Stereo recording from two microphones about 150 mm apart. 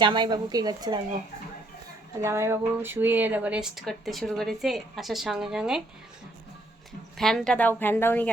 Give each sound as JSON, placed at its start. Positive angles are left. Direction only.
{"t": 0.0, "sound": "speech", "side_deg": -30}
{"t": 2.2, "sound": "speech", "side_deg": -20}
{"t": 7.2, "sound": "speech", "side_deg": 5}